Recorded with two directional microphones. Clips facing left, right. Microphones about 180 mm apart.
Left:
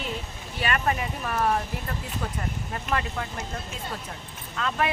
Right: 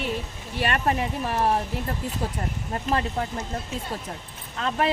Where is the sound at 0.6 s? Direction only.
35° right (ahead or behind).